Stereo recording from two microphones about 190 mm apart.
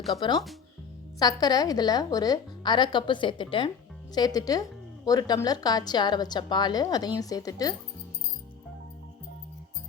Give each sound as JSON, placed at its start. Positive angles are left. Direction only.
{"t": 0.2, "sound": "a woman's voice", "side_deg": 20}